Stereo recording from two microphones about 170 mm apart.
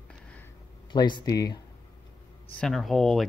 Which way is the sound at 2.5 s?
5° left (ahead or behind).